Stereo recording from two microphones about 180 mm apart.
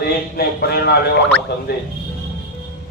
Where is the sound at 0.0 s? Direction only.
60° left (ahead or behind).